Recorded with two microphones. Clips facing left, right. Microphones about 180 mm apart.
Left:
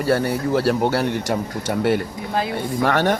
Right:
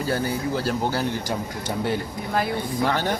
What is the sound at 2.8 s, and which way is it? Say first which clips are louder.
Speech: left 6 dB; 75° left (ahead or behind).